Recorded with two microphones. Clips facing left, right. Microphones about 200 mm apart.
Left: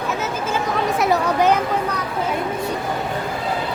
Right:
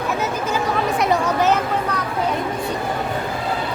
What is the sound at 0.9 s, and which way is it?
Chatter, 10° left (ahead or behind).